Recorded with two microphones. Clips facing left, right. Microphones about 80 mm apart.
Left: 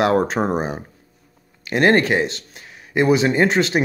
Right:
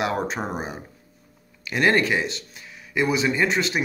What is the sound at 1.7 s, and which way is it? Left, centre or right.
Speech, left.